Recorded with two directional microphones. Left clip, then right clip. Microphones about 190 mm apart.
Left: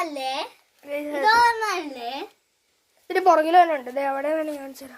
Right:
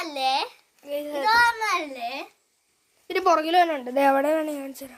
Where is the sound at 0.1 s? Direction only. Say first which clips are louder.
Right 4 dB; 45° right (ahead or behind).